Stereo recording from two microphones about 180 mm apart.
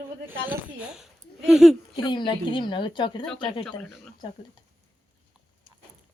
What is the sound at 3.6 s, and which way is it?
Speech, 5° left (ahead or behind).